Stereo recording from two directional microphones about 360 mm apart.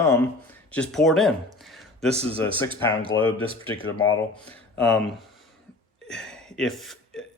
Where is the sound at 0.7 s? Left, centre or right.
Centre.